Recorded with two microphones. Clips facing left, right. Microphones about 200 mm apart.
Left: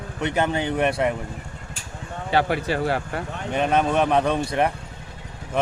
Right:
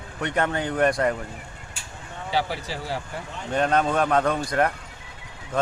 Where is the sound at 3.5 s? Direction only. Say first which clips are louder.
Left 1 dB; 15° left (ahead or behind).